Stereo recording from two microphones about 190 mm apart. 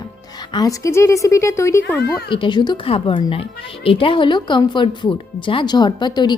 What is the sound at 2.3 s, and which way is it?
A woman's voice, 25° left (ahead or behind).